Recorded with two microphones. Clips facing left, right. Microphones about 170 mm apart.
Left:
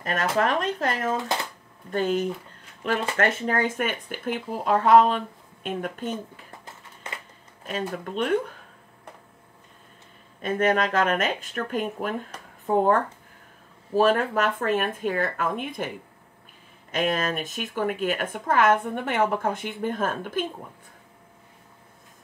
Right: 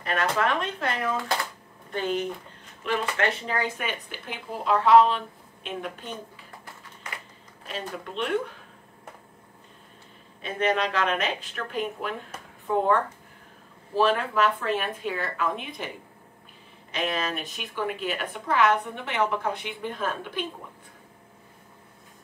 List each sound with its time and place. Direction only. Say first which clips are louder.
0.0 s a woman's voice: left 2 dB; 40° left (ahead or behind)
6.6 s a sound: left 1 dB; 25° left (ahead or behind)
7.6 s a woman's voice: left 5 dB; 45° left (ahead or behind)
10.4 s a woman's voice: left 3 dB; 50° left (ahead or behind)
16.9 s a woman's voice: left 4 dB; 50° left (ahead or behind)